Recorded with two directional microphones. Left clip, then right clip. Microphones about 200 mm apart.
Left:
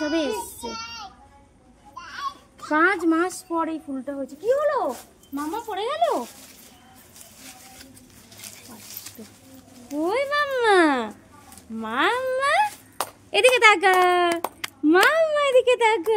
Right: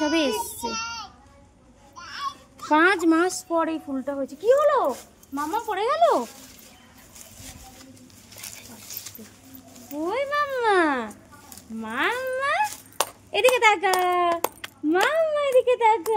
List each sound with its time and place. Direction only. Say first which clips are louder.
0.0 s child singing: right 2 dB; 35° right (ahead or behind)
0.3 s child singing: right 2 dB; 55° right (ahead or behind)
2.7 s a woman's voice: right 1 dB; 35° right (ahead or behind)
10.0 s speech: left 2 dB; 35° left (ahead or behind)
13.3 s speech: left 3 dB; 45° left (ahead or behind)